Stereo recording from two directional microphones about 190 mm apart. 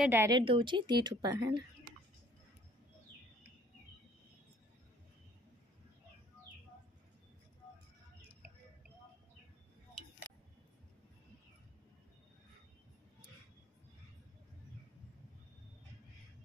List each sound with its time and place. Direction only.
0.0 s a woman's voice: 10° right (ahead or behind)
0.4 s speech: 25° right (ahead or behind)